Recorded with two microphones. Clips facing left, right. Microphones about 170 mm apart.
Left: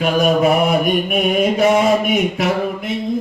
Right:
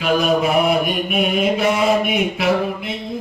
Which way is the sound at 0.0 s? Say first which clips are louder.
Left 2 dB; 50° left (ahead or behind).